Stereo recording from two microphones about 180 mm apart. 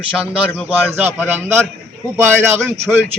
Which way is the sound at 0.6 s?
10° right (ahead or behind).